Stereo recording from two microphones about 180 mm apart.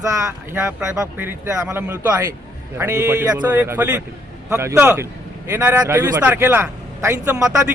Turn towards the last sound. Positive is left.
turn(degrees=-15)  # may be behind; listen again after turning